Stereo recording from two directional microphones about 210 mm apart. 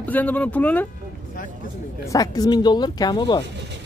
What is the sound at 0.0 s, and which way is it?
Speech, 5° left (ahead or behind).